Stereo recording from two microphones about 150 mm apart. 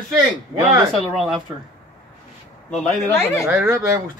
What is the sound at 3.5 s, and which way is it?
Speech, 15° right (ahead or behind).